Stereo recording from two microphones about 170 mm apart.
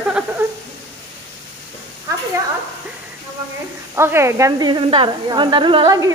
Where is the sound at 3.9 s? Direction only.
15° right (ahead or behind).